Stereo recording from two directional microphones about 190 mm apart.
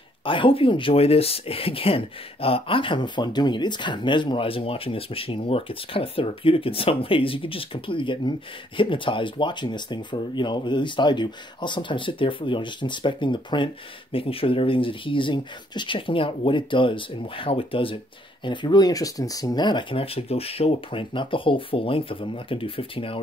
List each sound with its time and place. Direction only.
0.2 s speech: 25° left (ahead or behind)